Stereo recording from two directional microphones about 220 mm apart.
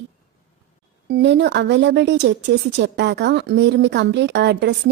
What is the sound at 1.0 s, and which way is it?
Speech, 50° right (ahead or behind).